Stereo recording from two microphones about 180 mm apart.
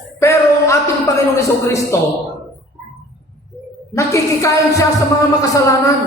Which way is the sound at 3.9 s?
15° left (ahead or behind).